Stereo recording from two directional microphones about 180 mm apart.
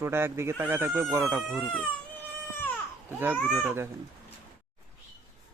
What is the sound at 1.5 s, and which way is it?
Speech, 5° left (ahead or behind).